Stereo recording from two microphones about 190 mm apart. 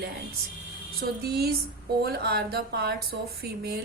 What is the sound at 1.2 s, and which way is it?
Speech, 55° right (ahead or behind).